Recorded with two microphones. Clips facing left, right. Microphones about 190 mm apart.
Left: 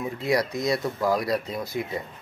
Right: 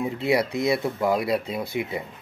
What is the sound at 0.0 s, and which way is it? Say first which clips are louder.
Speech: right 2 dB; 25° right (ahead or behind).